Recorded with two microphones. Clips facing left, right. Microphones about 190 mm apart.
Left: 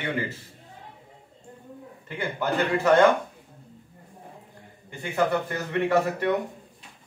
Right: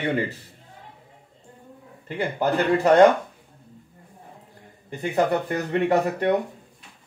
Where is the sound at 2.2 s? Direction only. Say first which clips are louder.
Right 3 dB; 35° right (ahead or behind).